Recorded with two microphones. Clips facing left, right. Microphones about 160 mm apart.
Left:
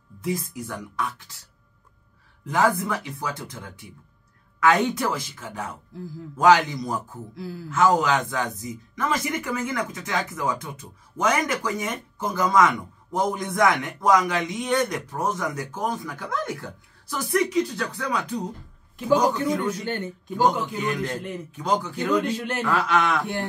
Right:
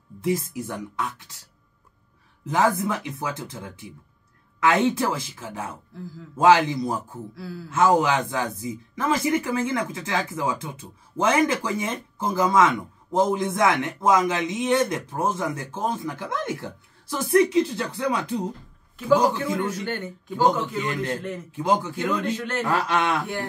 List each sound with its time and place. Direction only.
0.2 s speech: 25° right (ahead or behind)
2.4 s speech: 25° right (ahead or behind)
19.8 s a man's voice: 15° left (ahead or behind)
21.5 s speech: 25° right (ahead or behind)
22.0 s a man's voice: 15° left (ahead or behind)
22.7 s speech: 30° right (ahead or behind)